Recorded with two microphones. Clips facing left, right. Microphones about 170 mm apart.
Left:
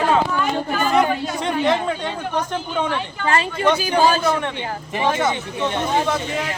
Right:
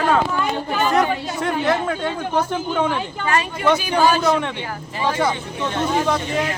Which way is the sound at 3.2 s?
30° left (ahead or behind).